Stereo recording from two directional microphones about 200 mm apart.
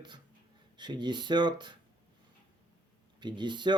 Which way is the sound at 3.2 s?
25° right (ahead or behind).